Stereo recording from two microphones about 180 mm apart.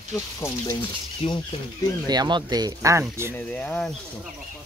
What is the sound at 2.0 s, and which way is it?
Speech, 25° right (ahead or behind).